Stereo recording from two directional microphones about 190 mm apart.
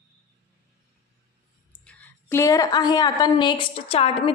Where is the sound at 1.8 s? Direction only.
10° left (ahead or behind); by 4.3 s 30° left (ahead or behind).